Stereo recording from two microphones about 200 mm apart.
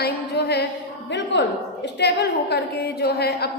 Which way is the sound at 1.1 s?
60° left (ahead or behind).